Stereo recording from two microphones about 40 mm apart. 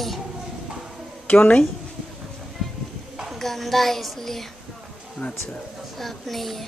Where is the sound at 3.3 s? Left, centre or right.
Centre.